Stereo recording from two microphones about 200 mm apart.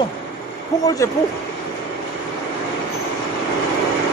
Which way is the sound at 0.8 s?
15° left (ahead or behind).